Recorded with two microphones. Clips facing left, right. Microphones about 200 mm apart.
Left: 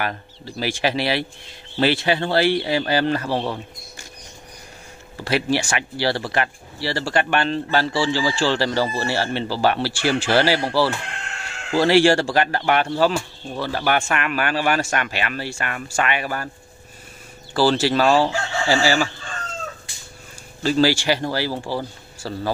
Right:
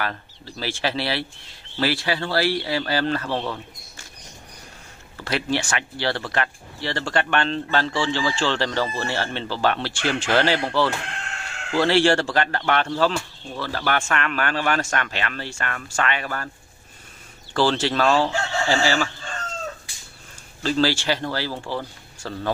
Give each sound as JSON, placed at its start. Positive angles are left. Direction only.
{"t": 0.0, "sound": "speech", "side_deg": 15}
{"t": 5.1, "sound": "speech", "side_deg": 10}
{"t": 17.6, "sound": "speech", "side_deg": 5}
{"t": 20.6, "sound": "speech", "side_deg": 10}